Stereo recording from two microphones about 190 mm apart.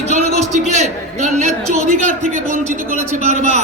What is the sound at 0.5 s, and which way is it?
A man's voice, 35° right (ahead or behind).